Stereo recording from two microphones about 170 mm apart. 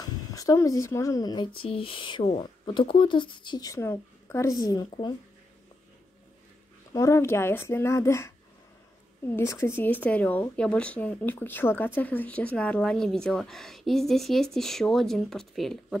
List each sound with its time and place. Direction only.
0.0 s speech: 20° left (ahead or behind)
6.9 s a woman's voice: 20° left (ahead or behind)
9.3 s a woman's voice: 15° left (ahead or behind); by 16.0 s centre (ahead or behind)